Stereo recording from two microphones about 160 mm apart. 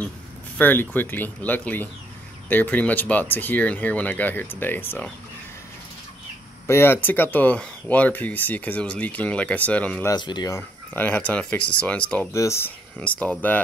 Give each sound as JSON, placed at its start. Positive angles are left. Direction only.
{"t": 0.6, "sound": "speech", "side_deg": 10}
{"t": 6.7, "sound": "speech", "side_deg": 15}
{"t": 10.1, "sound": "speech", "side_deg": 25}
{"t": 10.9, "sound": "speech", "side_deg": 10}
{"t": 12.3, "sound": "speech", "side_deg": 20}